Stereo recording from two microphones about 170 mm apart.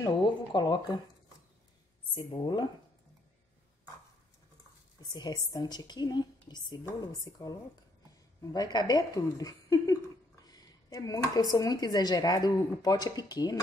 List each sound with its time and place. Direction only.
0.0 s speech: 25° left (ahead or behind)
2.1 s speech: 25° left (ahead or behind)
5.1 s speech: 25° left (ahead or behind)